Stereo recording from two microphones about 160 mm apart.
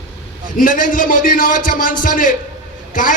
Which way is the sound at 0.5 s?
60° left (ahead or behind).